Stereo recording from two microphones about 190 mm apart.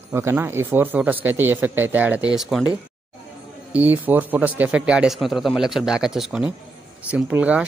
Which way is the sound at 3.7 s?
10° right (ahead or behind).